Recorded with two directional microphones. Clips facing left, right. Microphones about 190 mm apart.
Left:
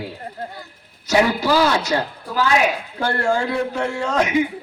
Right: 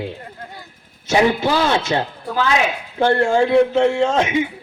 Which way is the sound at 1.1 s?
20° right (ahead or behind).